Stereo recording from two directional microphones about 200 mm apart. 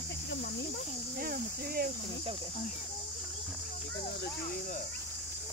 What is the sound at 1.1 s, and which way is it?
Speech, 45° right (ahead or behind).